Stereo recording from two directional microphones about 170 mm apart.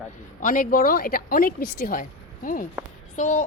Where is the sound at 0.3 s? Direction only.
50° left (ahead or behind).